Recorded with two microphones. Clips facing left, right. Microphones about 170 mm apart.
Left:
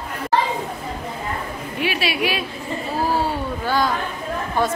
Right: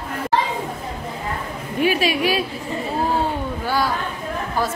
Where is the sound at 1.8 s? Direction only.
40° right (ahead or behind).